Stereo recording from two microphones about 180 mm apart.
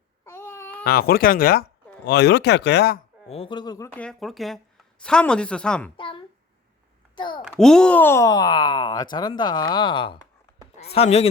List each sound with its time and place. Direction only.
0.3 s babbling: 15° left (ahead or behind)
0.9 s speech: 55° left (ahead or behind)
2.0 s speech: 65° left (ahead or behind)
3.2 s speech: 30° left (ahead or behind)
3.9 s speech: 5° left (ahead or behind)
6.0 s a child's voice: 30° left (ahead or behind)
7.5 s speech: 5° left (ahead or behind); by 11.3 s 35° left (ahead or behind)